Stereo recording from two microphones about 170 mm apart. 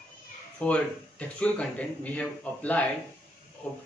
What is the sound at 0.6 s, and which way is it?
A man's voice, 10° left (ahead or behind).